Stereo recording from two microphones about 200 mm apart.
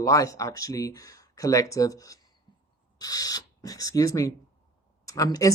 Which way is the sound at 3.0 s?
20° left (ahead or behind).